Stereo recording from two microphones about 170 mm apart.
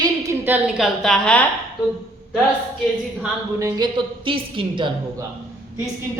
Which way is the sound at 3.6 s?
20° right (ahead or behind).